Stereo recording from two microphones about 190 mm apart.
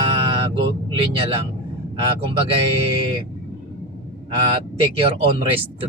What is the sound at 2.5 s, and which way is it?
Speech, 30° right (ahead or behind).